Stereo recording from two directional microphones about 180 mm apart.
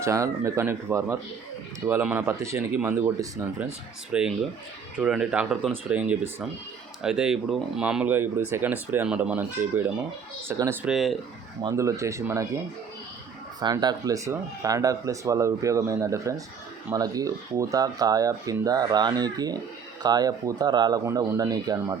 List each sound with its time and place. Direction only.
0.0 s speech: 15° right (ahead or behind)
10.8 s speech: centre (ahead or behind)
11.6 s speech: 15° right (ahead or behind)
13.6 s speech: 25° right (ahead or behind)